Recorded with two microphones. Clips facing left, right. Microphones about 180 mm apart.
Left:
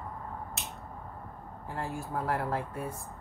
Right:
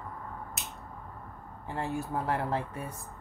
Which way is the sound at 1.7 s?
20° right (ahead or behind).